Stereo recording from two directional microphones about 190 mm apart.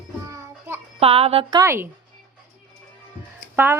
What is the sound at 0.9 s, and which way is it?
Speech, 30° right (ahead or behind).